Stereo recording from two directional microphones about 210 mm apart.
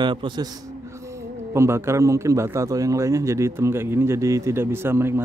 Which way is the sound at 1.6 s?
10° right (ahead or behind).